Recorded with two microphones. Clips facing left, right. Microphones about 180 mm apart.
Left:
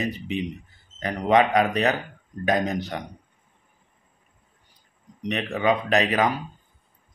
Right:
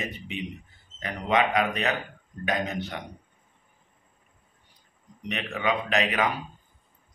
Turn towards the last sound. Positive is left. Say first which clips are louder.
# left 4 dB
turn(degrees=35)  # may be behind; listen again after turning